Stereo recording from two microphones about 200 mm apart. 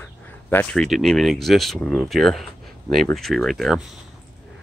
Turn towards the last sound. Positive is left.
turn(degrees=0)  # may be behind; listen again after turning